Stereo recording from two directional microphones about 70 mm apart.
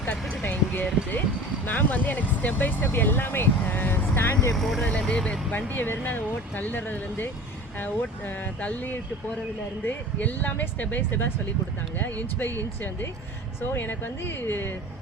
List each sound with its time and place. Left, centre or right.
0.0 s a sound: left
1.6 s speech: left
4.5 s speech: centre
4.8 s speech: centre
5.5 s speech: left
8.6 s speech: left